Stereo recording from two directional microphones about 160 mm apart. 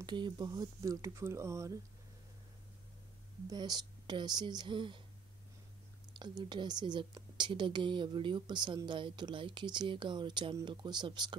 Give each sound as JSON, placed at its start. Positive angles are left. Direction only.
{"t": 0.0, "sound": "a woman's voice", "side_deg": -30}
{"t": 3.4, "sound": "a woman's voice", "side_deg": -25}
{"t": 6.1, "sound": "a woman's voice", "side_deg": -30}